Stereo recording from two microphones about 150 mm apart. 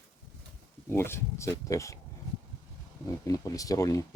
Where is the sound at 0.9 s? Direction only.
15° left (ahead or behind).